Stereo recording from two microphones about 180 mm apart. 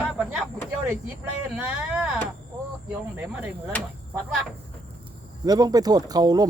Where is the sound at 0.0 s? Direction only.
5° right (ahead or behind).